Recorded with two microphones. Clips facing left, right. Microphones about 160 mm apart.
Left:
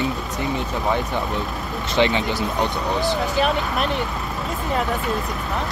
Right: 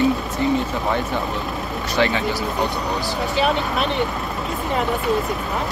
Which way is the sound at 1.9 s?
20° left (ahead or behind).